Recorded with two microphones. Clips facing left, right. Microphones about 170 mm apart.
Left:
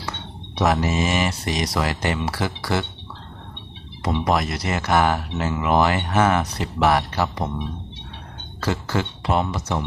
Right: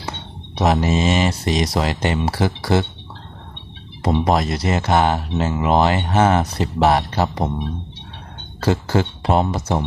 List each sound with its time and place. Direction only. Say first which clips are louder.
0.5 s speech: right 3 dB; 25° right (ahead or behind)
4.0 s speech: right 4 dB; 30° right (ahead or behind)
8.6 s speech: right 5 dB; 30° right (ahead or behind)